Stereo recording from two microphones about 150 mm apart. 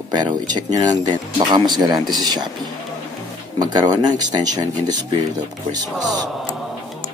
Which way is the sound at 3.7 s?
25° right (ahead or behind).